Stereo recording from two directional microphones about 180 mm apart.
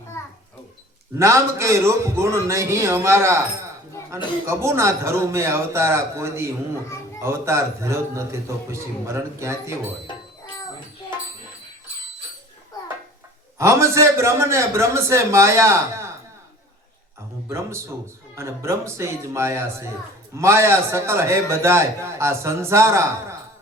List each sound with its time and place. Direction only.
1.2 s a man's voice: 15° right (ahead or behind)
13.6 s a man's voice: 15° right (ahead or behind)
18.3 s a man's voice: 15° right (ahead or behind)